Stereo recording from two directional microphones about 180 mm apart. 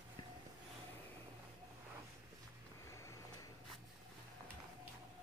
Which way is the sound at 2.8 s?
15° left (ahead or behind).